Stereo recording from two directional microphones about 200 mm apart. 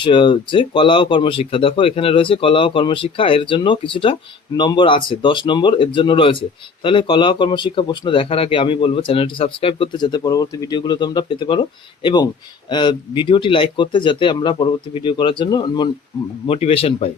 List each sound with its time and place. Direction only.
0.0 s speech: 25° left (ahead or behind)